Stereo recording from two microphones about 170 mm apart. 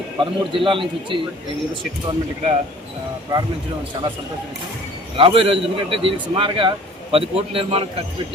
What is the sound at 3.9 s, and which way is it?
Speech, 20° right (ahead or behind).